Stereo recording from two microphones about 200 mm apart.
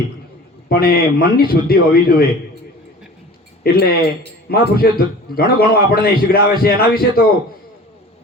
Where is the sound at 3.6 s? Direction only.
50° left (ahead or behind).